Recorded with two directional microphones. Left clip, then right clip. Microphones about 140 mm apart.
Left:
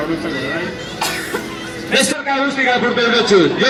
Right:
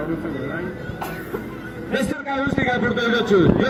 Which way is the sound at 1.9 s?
20° left (ahead or behind).